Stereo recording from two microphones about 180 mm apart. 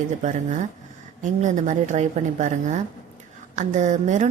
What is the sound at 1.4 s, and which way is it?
A woman's voice, 40° right (ahead or behind).